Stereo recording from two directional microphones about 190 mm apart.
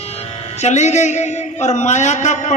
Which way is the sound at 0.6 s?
35° left (ahead or behind).